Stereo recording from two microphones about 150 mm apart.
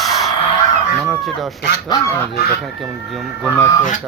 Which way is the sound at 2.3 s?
90° left.